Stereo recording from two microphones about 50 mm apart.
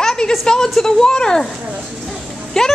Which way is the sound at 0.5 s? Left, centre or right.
Centre.